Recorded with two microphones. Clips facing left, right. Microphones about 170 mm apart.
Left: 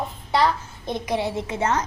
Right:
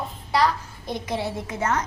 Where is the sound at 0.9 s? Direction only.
20° left (ahead or behind).